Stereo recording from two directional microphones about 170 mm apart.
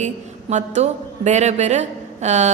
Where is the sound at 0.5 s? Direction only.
40° right (ahead or behind).